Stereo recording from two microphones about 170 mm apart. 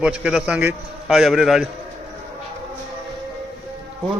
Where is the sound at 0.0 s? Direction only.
5° right (ahead or behind).